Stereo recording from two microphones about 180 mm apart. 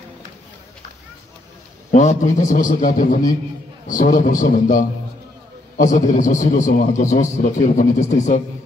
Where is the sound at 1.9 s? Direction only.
45° left (ahead or behind).